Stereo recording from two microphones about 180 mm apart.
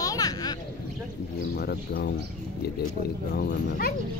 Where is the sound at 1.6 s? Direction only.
60° left (ahead or behind).